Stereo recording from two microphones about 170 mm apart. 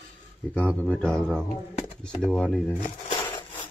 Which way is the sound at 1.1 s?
5° left (ahead or behind).